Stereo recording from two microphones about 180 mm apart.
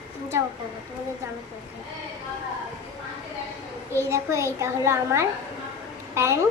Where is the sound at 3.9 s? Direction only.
15° right (ahead or behind).